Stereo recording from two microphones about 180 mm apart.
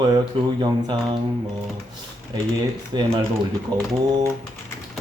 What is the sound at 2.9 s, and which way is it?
Speech, 25° right (ahead or behind).